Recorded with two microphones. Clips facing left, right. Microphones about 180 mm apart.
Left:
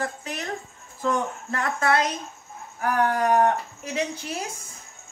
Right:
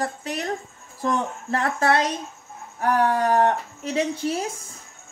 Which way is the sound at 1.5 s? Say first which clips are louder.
Right 3 dB; 30° right (ahead or behind).